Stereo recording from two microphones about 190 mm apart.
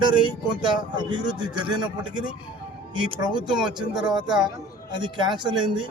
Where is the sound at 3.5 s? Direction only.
5° right (ahead or behind).